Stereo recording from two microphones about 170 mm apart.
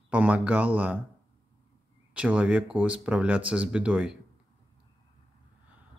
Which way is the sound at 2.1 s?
5° right (ahead or behind).